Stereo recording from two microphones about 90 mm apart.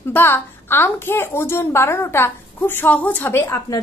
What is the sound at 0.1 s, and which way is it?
A woman's voice, 25° left (ahead or behind).